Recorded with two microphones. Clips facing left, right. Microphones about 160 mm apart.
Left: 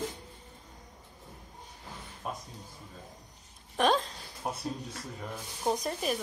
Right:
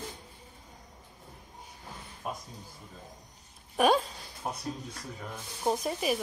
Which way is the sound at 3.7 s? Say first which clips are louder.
Right 2 dB; 10° right (ahead or behind).